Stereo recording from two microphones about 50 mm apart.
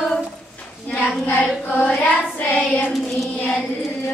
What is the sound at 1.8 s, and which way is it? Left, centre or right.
Child singing, left.